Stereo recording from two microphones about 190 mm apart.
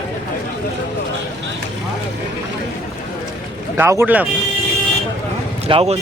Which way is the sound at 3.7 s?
15° right (ahead or behind).